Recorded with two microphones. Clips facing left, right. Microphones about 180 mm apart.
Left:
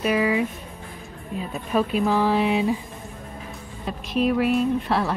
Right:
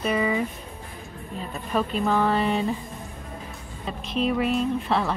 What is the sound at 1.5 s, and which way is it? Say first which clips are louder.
Speech: left 3 dB; 5° left (ahead or behind).